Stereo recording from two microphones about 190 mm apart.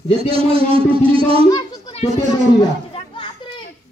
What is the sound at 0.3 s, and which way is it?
Speech, 30° right (ahead or behind).